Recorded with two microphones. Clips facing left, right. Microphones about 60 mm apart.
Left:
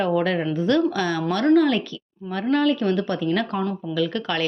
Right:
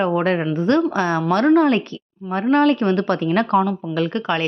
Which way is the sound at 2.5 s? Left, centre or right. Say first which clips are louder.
Right 4 dB; right.